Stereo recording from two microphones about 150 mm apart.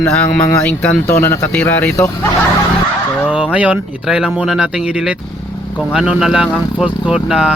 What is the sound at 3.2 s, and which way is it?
Speech, 10° right (ahead or behind).